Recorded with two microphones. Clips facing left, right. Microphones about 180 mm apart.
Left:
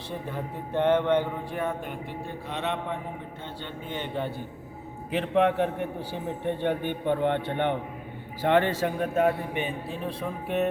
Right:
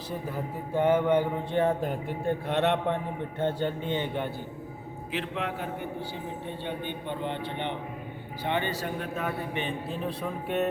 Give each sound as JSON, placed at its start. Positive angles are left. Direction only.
{"t": 0.1, "sound": "speech", "side_deg": -5}
{"t": 1.5, "sound": "speech", "side_deg": -35}
{"t": 2.2, "sound": "speech", "side_deg": -60}
{"t": 3.4, "sound": "a man's voice", "side_deg": -45}
{"t": 3.8, "sound": "a man's voice", "side_deg": -20}
{"t": 5.1, "sound": "speech", "side_deg": 55}
{"t": 8.4, "sound": "a man's voice", "side_deg": 85}
{"t": 8.8, "sound": "a man's voice", "side_deg": 45}
{"t": 9.6, "sound": "speech", "side_deg": 5}